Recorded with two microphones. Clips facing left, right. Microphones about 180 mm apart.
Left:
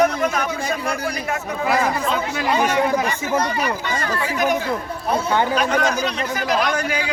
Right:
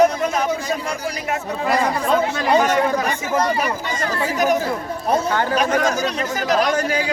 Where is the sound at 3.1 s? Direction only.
45° right (ahead or behind).